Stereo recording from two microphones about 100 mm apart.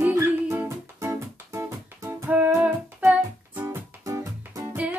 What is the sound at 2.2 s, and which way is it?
Music, 15° right (ahead or behind).